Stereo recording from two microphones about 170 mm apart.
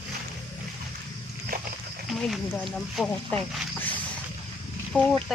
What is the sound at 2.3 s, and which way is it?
Speech, centre (ahead or behind).